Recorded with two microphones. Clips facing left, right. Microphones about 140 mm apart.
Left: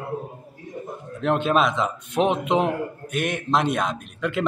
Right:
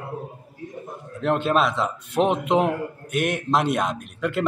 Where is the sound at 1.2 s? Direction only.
Centre (ahead or behind).